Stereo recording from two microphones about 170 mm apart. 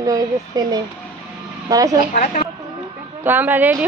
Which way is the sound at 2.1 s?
45° left (ahead or behind).